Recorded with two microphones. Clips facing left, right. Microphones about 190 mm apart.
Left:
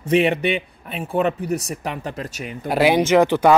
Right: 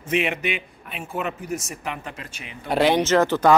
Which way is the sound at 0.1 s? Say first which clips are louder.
Left 6 dB; 35° left (ahead or behind).